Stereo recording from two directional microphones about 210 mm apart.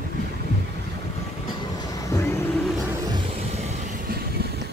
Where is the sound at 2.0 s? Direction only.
15° left (ahead or behind).